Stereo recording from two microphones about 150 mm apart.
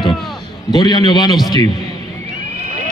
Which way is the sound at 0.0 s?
Centre (ahead or behind).